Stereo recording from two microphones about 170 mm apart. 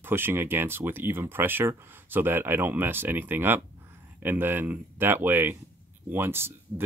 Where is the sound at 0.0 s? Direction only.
15° right (ahead or behind).